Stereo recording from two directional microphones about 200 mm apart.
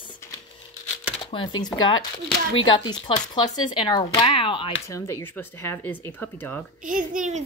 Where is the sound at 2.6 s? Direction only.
20° left (ahead or behind).